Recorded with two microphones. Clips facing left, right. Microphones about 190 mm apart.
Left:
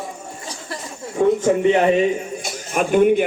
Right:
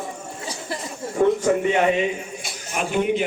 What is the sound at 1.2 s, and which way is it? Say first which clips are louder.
Speech: left 2 dB; 5° right (ahead or behind).